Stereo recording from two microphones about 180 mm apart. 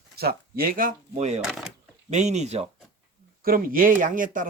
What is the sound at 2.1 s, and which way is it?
Speech, 40° right (ahead or behind).